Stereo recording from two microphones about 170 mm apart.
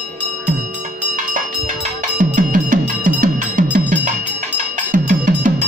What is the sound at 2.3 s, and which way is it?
Music, 50° right (ahead or behind).